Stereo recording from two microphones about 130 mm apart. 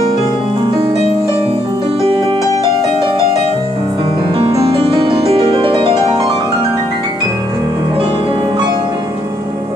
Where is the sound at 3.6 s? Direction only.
40° right (ahead or behind).